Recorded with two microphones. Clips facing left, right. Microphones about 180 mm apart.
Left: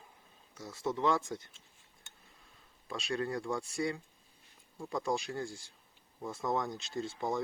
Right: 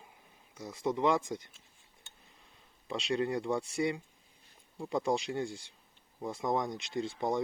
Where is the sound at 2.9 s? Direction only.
20° right (ahead or behind).